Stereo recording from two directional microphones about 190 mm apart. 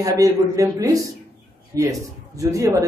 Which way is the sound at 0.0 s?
20° right (ahead or behind).